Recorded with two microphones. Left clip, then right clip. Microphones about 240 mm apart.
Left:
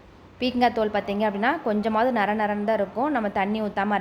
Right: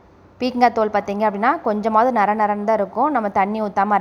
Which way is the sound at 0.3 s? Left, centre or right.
Centre.